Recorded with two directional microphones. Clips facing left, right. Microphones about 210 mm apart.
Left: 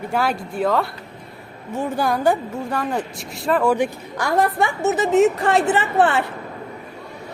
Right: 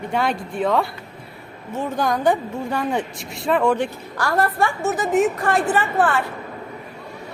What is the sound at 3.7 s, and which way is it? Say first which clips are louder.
A woman's voice: left 2 dB; 15° left (ahead or behind).